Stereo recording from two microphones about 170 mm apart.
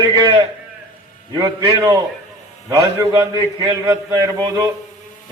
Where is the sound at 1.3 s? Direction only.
20° right (ahead or behind).